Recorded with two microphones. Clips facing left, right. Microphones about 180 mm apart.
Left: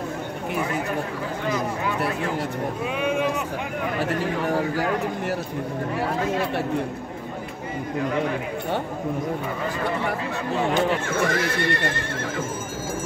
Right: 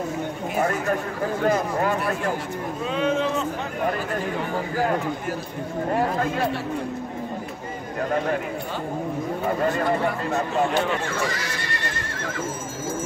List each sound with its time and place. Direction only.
0.6 s chatter: 55° right (ahead or behind)
1.4 s speech: 50° right (ahead or behind)
3.0 s speech: 15° left (ahead or behind)
5.9 s speech: 55° right (ahead or behind)
9.6 s speech: 50° right (ahead or behind)
11.1 s speech: 55° left (ahead or behind)